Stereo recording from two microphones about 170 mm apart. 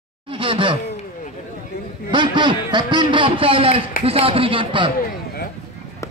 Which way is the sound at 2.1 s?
25° right (ahead or behind).